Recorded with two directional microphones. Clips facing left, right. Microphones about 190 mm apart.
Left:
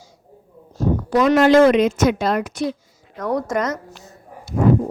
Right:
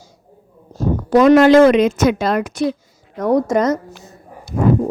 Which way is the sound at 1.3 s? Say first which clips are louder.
Right 3 dB; 90° right.